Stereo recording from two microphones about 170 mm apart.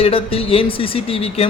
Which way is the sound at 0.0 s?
35° left (ahead or behind).